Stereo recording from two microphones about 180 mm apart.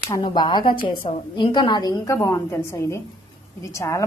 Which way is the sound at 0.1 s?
25° left (ahead or behind).